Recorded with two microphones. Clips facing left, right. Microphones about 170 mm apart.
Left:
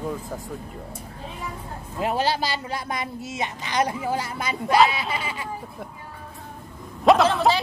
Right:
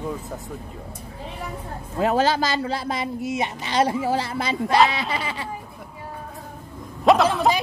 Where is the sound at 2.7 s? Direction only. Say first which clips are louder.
Right 3 dB; 30° right (ahead or behind).